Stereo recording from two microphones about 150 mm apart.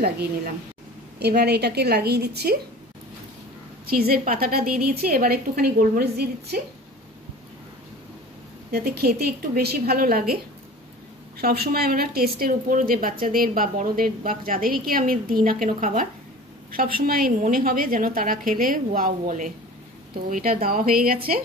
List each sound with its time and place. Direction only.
1.2 s a woman's voice: 90° right
3.9 s a woman's voice: 90° right
4.2 s a woman's voice: 75° right (ahead or behind)
8.7 s a woman's voice: 90° right
11.3 s a woman's voice: 90° right; by 16.1 s 65° right (ahead or behind)
16.7 s a woman's voice: 75° right (ahead or behind)